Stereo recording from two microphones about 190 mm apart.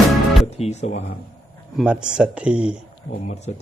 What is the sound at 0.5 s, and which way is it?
Music, 35° left (ahead or behind).